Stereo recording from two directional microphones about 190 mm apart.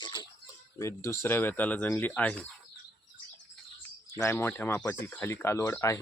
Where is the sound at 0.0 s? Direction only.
20° left (ahead or behind).